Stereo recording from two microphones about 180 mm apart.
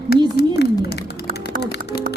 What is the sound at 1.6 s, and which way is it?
Music, 65° left (ahead or behind).